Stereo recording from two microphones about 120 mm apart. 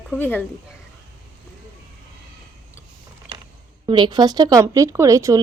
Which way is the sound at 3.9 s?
40° right (ahead or behind).